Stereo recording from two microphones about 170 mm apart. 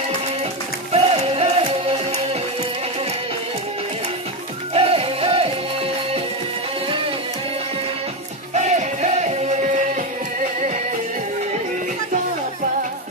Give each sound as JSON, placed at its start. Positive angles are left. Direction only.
{"t": 0.9, "sound": "music", "side_deg": -35}
{"t": 4.7, "sound": "music", "side_deg": -35}
{"t": 8.5, "sound": "music", "side_deg": -45}